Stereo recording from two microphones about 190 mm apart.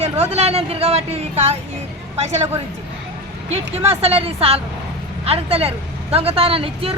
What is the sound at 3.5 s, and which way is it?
Speech, 30° right (ahead or behind).